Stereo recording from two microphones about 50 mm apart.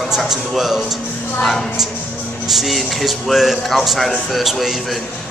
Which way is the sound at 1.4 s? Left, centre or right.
Centre.